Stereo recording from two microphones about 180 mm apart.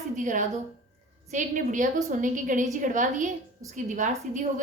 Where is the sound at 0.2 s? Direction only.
45° right (ahead or behind).